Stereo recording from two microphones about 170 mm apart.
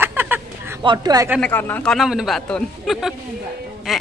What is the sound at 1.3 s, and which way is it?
Speech, 10° left (ahead or behind).